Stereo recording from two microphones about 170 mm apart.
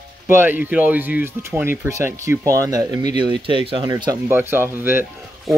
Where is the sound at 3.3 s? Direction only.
30° right (ahead or behind).